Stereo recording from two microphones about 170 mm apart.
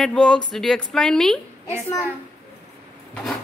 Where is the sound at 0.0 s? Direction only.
5° left (ahead or behind).